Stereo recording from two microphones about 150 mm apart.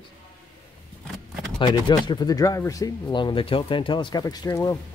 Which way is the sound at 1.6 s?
30° left (ahead or behind).